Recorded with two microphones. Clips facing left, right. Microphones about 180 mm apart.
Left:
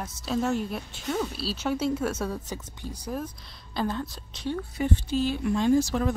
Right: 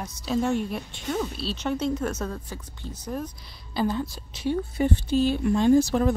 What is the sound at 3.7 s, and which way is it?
Speech, 5° right (ahead or behind).